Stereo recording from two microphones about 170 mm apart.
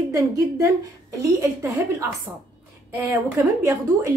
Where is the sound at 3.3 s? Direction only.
15° right (ahead or behind).